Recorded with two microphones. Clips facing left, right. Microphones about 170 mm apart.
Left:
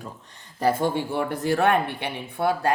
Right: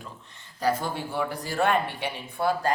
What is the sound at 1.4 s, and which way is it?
Speech, 60° left (ahead or behind).